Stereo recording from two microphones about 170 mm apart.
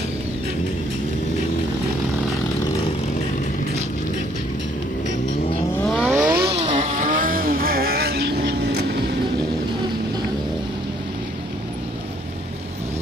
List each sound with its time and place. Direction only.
5.8 s vehicle: centre (ahead or behind)
6.2 s vehicle: 65° right (ahead or behind)
7.0 s vehicle: 50° right (ahead or behind); by 8.7 s 80° right